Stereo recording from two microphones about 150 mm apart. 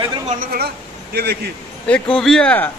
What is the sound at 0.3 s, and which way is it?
Speech, 75° right (ahead or behind).